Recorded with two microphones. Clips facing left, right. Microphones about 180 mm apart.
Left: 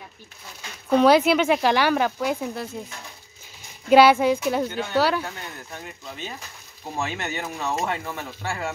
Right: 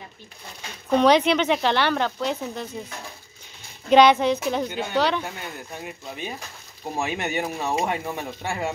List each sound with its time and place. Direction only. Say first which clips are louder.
0.9 s speech: left 1 dB; 5° left (ahead or behind)
3.9 s speech: left 1 dB; 5° left (ahead or behind)
5.2 s speech: right 1 dB; 15° right (ahead or behind)